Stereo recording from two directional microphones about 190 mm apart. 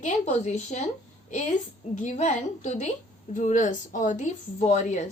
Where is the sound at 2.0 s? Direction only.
40° left (ahead or behind).